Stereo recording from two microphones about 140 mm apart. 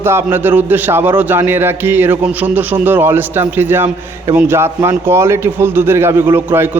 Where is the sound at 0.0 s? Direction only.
15° right (ahead or behind).